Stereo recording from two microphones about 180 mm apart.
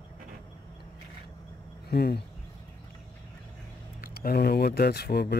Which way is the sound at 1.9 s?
60° left (ahead or behind).